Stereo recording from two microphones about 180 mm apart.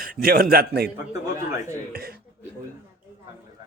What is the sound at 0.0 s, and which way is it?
Speech, 55° right (ahead or behind).